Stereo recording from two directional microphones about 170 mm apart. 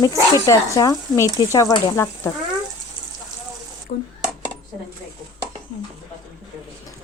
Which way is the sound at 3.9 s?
55° left (ahead or behind).